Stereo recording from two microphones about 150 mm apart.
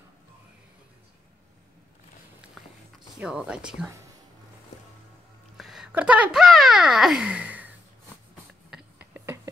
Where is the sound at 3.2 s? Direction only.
5° right (ahead or behind).